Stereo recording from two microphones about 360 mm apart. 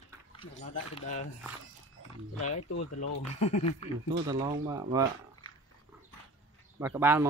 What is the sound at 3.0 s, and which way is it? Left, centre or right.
Speech, left.